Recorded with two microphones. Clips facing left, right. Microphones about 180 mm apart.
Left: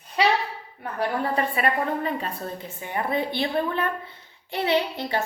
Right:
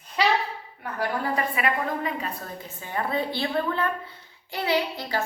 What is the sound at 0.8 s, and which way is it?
A woman's voice, 25° left (ahead or behind).